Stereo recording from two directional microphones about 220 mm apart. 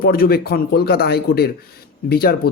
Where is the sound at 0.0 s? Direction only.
45° left (ahead or behind).